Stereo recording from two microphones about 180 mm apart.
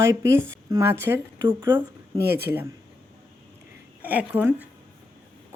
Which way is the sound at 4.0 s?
10° right (ahead or behind).